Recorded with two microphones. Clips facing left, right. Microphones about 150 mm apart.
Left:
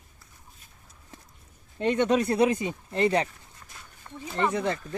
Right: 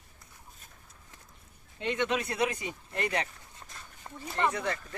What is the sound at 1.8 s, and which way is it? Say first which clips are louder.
Speech: left 7 dB; 40° left (ahead or behind).